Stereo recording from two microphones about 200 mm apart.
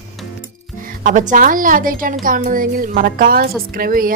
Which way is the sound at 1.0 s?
40° right (ahead or behind).